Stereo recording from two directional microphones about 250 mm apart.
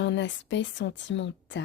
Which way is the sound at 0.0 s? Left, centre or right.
Left.